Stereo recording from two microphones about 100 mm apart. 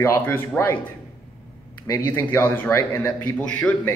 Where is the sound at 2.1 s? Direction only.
20° left (ahead or behind).